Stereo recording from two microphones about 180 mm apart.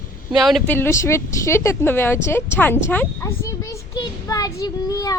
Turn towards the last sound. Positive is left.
turn(degrees=20)  # may be behind; listen again after turning